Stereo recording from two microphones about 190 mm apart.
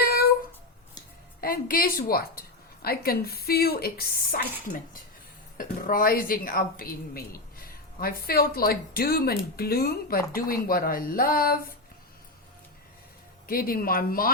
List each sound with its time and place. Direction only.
1.4 s a woman's voice: 50° left (ahead or behind)
13.5 s speech: 50° left (ahead or behind)